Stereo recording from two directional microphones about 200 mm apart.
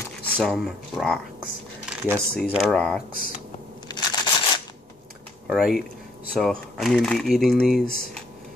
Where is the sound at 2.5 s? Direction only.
5° left (ahead or behind).